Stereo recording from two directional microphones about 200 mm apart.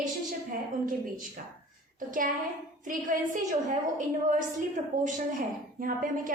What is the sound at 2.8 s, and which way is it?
Speech, 40° right (ahead or behind).